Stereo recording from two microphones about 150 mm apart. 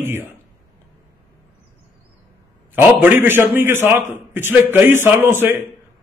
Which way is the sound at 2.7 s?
15° right (ahead or behind).